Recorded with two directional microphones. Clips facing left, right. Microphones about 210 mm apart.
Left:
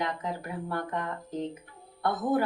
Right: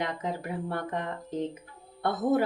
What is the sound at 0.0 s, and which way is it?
Speech, 25° right (ahead or behind).